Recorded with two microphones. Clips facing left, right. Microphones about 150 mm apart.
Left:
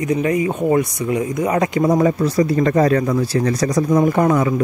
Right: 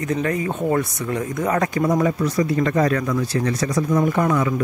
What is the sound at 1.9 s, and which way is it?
Speech, 35° left (ahead or behind).